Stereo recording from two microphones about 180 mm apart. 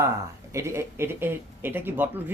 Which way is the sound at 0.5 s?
15° right (ahead or behind).